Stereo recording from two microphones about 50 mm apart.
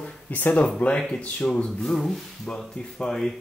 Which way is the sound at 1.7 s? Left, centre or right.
Centre.